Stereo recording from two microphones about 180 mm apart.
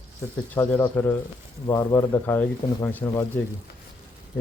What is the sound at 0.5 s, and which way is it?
Speech, 10° left (ahead or behind).